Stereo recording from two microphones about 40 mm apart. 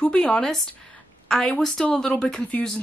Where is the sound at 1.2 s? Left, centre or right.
Centre.